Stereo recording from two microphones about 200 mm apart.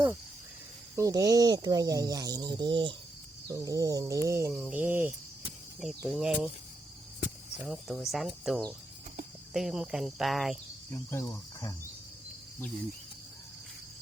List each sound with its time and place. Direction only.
0.9 s speech: 15° right (ahead or behind)
7.6 s speech: centre (ahead or behind)
10.9 s cricket: 15° left (ahead or behind)